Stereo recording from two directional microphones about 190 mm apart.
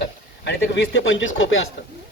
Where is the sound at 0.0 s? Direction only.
65° left (ahead or behind).